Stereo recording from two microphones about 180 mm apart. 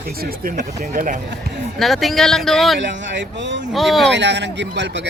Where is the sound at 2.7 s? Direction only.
85° right.